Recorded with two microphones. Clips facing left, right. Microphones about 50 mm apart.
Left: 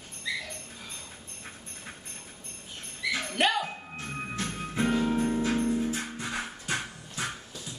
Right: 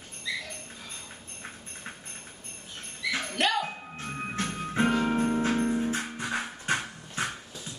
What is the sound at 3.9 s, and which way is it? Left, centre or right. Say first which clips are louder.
Music: right 2 dB; right.